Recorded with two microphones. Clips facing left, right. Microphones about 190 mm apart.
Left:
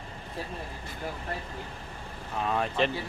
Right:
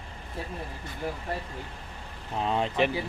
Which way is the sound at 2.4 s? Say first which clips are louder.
Right 2 dB; 25° right (ahead or behind).